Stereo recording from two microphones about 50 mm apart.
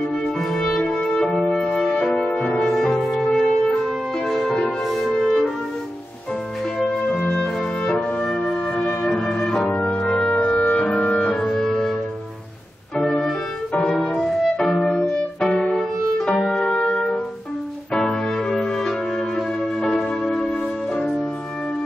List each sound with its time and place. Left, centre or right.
0.5 s music: centre
6.9 s music: centre
8.8 s music: centre
9.3 s organ: centre
9.7 s music: left
11.3 s music: centre
12.9 s organ: centre
13.7 s music: centre